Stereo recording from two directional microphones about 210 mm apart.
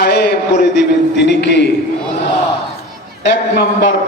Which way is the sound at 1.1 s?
55° left (ahead or behind).